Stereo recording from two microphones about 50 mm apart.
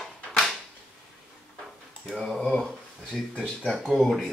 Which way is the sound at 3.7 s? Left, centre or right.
Centre.